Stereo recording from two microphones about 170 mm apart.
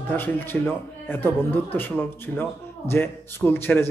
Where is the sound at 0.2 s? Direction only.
10° left (ahead or behind).